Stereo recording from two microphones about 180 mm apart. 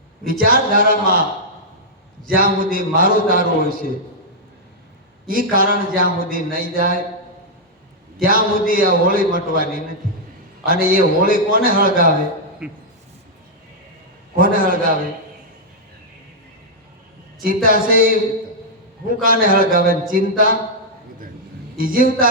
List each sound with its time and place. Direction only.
0.4 s speech: 50° right (ahead or behind)
2.2 s speech: 50° right (ahead or behind)
5.3 s speech: 50° right (ahead or behind)
8.2 s speech: 50° right (ahead or behind)
12.6 s speech: 5° right (ahead or behind)
14.3 s speech: 50° right (ahead or behind)
17.4 s speech: 50° right (ahead or behind)
21.8 s speech: 50° right (ahead or behind)